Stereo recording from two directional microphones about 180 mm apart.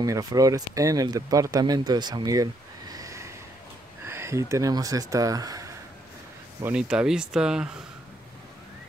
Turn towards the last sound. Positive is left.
turn(degrees=-5)  # may be behind; listen again after turning